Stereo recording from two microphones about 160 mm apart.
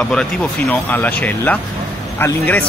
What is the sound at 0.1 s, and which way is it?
Speech, 5° left (ahead or behind).